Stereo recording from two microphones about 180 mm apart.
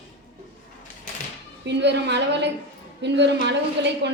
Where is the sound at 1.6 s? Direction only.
70° right (ahead or behind).